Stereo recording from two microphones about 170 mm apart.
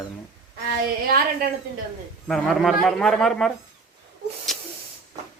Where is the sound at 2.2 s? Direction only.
5° left (ahead or behind).